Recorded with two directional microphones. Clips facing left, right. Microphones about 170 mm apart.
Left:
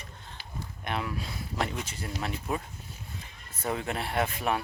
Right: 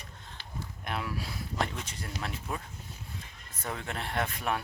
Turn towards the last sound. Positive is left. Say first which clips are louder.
# left 3 dB
turn(degrees=5)  # may be behind; listen again after turning